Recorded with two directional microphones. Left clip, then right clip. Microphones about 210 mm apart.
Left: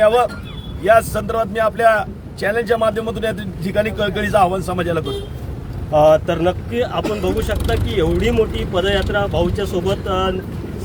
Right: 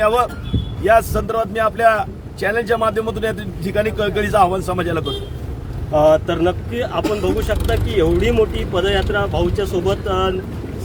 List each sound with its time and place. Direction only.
0.0 s speech: centre (ahead or behind)
5.9 s speech: 25° left (ahead or behind); by 10.3 s centre (ahead or behind)